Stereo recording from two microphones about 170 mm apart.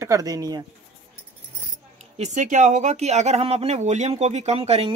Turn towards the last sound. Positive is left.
turn(degrees=-35)  # may be behind; listen again after turning